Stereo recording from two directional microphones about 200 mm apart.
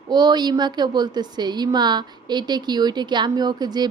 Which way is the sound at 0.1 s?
20° right (ahead or behind).